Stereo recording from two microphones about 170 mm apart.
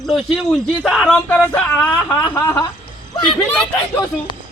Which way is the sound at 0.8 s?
Centre (ahead or behind).